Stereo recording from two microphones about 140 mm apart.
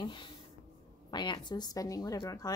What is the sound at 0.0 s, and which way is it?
Speech, 35° left (ahead or behind).